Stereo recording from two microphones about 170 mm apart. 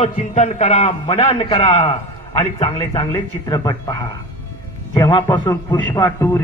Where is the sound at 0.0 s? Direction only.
40° left (ahead or behind).